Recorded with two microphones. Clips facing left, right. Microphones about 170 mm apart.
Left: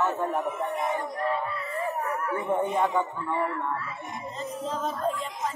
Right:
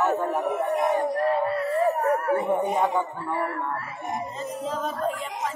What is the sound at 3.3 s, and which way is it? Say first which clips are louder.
Speech: even; 65° right (ahead or behind).